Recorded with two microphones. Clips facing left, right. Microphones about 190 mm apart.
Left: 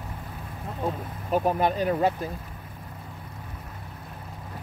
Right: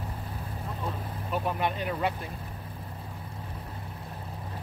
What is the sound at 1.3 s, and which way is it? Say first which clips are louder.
Speech: left 6 dB; 40° left (ahead or behind).